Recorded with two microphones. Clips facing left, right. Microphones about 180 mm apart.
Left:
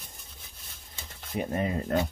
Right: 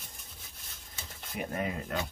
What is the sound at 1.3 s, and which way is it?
Speech, 30° left (ahead or behind).